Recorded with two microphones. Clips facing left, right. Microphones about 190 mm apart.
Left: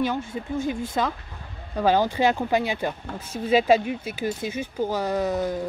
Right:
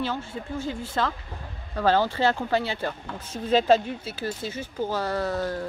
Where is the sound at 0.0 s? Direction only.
15° left (ahead or behind).